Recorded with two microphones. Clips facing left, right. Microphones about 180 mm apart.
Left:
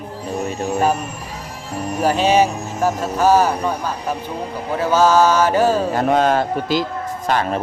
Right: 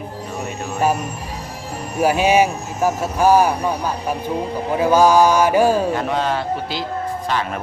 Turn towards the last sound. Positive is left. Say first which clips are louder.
# left 2 dB
turn(degrees=45)  # may be behind; listen again after turning